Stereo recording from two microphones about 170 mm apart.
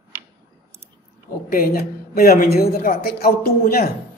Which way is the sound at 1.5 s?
60° left (ahead or behind).